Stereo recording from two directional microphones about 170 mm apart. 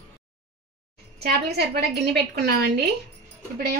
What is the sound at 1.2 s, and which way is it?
A woman's voice, 70° right (ahead or behind).